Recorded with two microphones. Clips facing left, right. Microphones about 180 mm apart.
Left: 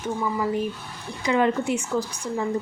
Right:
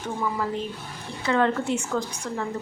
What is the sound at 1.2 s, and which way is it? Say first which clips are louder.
Speech: left 1 dB; 15° left (ahead or behind).